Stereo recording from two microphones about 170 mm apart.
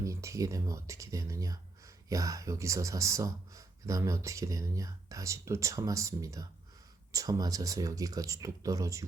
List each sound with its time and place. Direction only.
0.0 s a man's voice: 20° right (ahead or behind)